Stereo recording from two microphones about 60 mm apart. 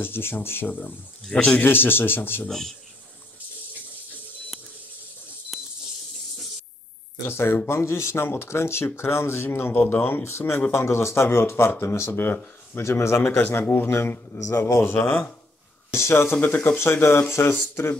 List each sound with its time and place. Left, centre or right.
0.0 s speech: left
1.3 s a man's voice: centre
1.6 s speech: left
2.4 s speech: centre
5.5 s a sound: centre
7.2 s speech: left
10.2 s speech: left
13.4 s speech: left
14.4 s speech: left
14.8 s speech: left
15.9 s speech: left